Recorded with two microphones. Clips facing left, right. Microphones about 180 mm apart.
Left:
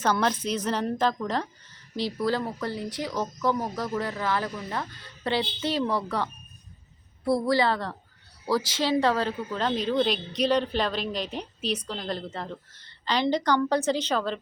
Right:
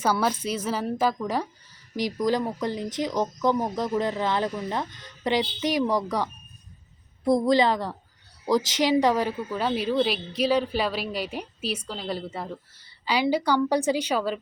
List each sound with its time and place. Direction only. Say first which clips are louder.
0.0 s a woman's voice: right 1 dB; 10° right (ahead or behind)